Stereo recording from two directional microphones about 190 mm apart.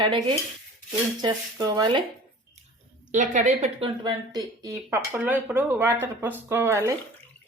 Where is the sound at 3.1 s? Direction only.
40° right (ahead or behind); by 7.0 s 15° right (ahead or behind).